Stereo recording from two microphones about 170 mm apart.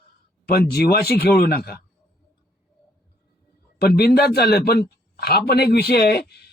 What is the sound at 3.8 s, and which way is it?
A man's voice, 65° left (ahead or behind).